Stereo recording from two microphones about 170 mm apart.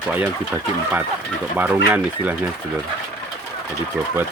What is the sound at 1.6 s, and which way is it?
Speech, 10° right (ahead or behind).